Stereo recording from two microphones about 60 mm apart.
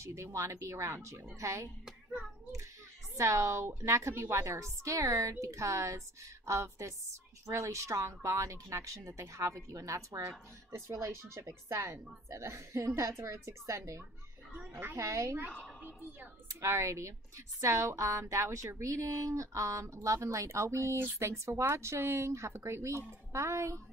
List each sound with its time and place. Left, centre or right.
0.0 s a woman's voice: right
1.9 s child singing: centre
3.2 s a woman's voice: right
14.6 s speech: right
15.8 s a woman's voice: right
16.6 s a woman's voice: right